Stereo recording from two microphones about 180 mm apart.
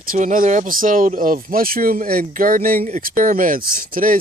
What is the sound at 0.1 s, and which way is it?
Speech, 45° right (ahead or behind).